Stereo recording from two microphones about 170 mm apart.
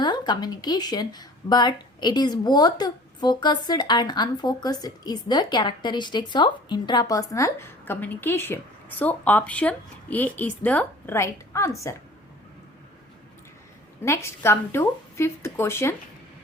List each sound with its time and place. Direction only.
0.0 s speech: 25° left (ahead or behind)
14.0 s a woman's voice: 15° left (ahead or behind)